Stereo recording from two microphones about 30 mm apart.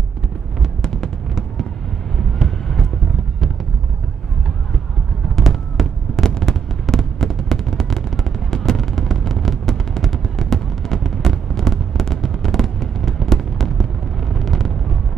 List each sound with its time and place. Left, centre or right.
2.1 s vehicle: centre
5.3 s fireworks: centre
9.3 s a sound: centre
14.3 s vehicle: centre